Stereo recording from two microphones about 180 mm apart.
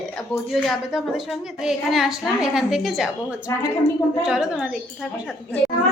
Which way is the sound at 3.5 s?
15° left (ahead or behind).